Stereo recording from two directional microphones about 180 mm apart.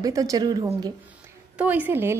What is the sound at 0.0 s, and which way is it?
Speech, 20° right (ahead or behind).